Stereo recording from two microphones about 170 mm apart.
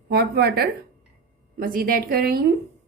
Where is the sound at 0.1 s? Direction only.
65° right (ahead or behind).